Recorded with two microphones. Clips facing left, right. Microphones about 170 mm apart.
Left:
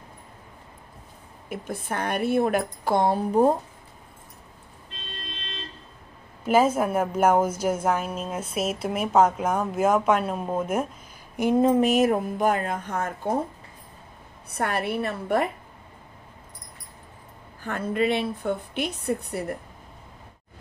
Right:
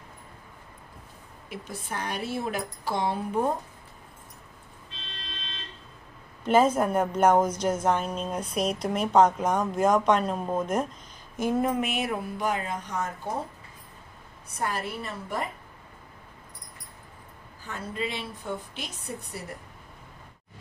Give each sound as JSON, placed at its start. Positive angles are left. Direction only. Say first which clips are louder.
{"t": 1.5, "sound": "a woman's voice", "louder": "left 5 dB", "side_deg": 55}
{"t": 6.4, "sound": "a woman's voice", "louder": "left 1 dB", "side_deg": 5}
{"t": 11.8, "sound": "a woman's voice", "louder": "left 9 dB", "side_deg": 40}
{"t": 14.5, "sound": "a woman's voice", "louder": "left 5 dB", "side_deg": 65}
{"t": 17.6, "sound": "a woman's voice", "louder": "left 9 dB", "side_deg": 60}